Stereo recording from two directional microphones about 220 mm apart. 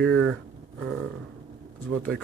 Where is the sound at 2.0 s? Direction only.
5° left (ahead or behind).